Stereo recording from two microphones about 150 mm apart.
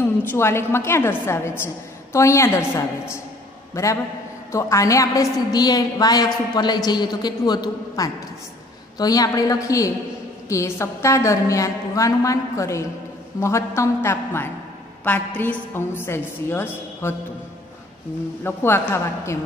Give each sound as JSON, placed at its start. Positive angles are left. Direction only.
{"t": 0.0, "sound": "a woman's voice", "side_deg": 15}
{"t": 18.4, "sound": "a woman's voice", "side_deg": 15}